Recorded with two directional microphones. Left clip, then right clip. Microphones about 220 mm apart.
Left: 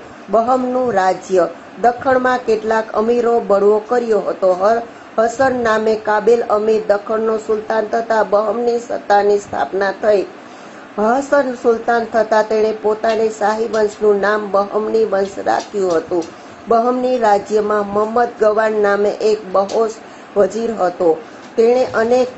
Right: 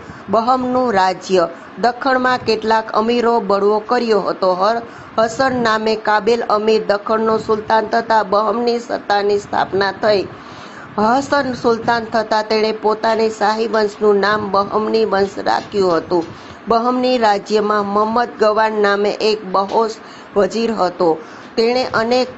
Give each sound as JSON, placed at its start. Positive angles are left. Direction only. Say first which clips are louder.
{"t": 0.3, "sound": "a man's voice", "louder": "even", "side_deg": -45}